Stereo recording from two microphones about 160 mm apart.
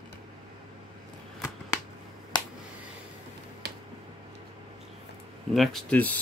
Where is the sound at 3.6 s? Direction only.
90° right.